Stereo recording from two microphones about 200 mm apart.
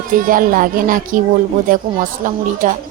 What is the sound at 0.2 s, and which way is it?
A woman's voice, 45° right (ahead or behind).